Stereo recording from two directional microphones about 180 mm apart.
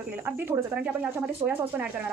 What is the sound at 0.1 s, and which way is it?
Speech, 10° right (ahead or behind).